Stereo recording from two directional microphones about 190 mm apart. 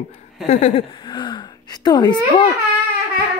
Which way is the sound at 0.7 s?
25° left (ahead or behind).